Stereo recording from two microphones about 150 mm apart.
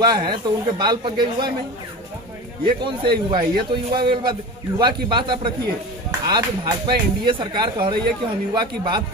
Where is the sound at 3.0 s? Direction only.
35° right (ahead or behind).